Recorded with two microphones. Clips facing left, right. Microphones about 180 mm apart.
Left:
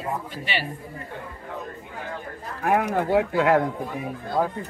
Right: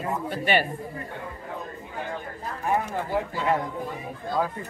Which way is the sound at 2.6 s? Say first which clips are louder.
Left 5 dB; 75° left (ahead or behind).